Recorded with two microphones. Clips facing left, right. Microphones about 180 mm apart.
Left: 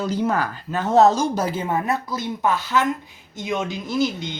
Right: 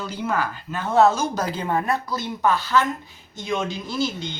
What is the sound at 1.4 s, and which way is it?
Speech, 25° left (ahead or behind).